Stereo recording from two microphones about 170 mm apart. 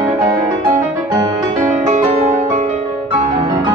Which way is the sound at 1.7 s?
45° right (ahead or behind).